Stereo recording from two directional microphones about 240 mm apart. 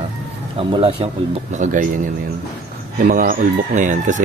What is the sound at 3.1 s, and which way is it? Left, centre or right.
Speech, right.